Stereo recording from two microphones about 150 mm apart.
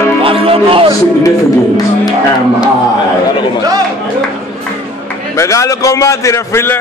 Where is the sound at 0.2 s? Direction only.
35° right (ahead or behind).